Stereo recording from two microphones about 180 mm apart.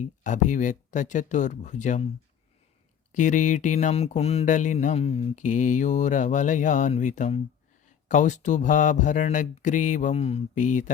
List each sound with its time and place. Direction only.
0.0 s speech: 45° left (ahead or behind)
3.1 s speech: 45° left (ahead or behind)